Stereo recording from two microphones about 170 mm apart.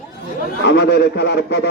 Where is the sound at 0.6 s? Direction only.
80° left.